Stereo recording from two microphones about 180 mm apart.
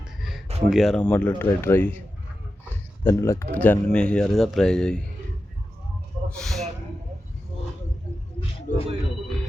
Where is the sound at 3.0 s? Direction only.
15° left (ahead or behind).